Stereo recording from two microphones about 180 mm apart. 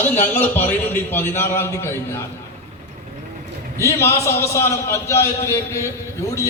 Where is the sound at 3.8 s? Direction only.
15° left (ahead or behind).